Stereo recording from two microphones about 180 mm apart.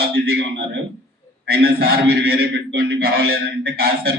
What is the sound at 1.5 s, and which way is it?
A man's voice, 60° right (ahead or behind).